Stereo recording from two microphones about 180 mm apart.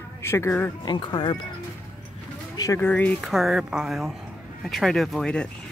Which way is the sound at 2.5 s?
20° left (ahead or behind).